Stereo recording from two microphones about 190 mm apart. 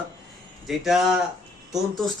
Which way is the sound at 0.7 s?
Centre (ahead or behind).